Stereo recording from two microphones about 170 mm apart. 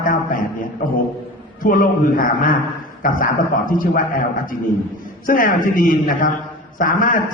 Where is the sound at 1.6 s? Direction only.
55° left (ahead or behind).